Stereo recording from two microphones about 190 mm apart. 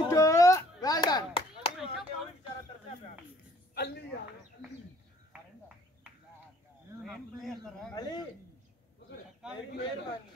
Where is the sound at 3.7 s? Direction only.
60° left (ahead or behind).